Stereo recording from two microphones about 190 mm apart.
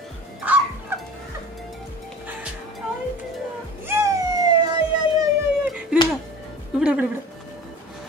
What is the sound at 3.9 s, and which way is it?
Music, 15° right (ahead or behind).